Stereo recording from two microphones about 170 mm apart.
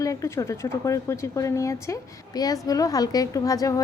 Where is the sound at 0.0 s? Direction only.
20° left (ahead or behind).